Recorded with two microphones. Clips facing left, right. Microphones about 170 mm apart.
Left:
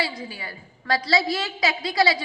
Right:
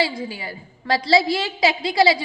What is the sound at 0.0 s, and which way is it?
A woman's voice, 25° right (ahead or behind).